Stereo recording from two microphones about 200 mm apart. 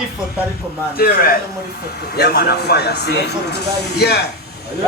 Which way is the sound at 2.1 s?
55° left (ahead or behind).